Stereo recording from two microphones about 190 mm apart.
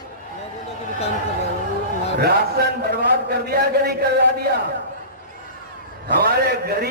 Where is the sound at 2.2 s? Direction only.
55° right (ahead or behind).